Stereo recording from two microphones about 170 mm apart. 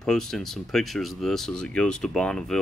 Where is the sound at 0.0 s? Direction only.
5° left (ahead or behind).